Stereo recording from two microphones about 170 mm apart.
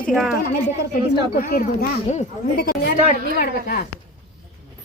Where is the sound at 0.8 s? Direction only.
65° left (ahead or behind).